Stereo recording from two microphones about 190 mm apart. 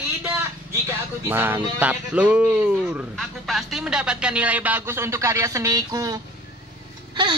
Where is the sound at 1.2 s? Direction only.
10° right (ahead or behind).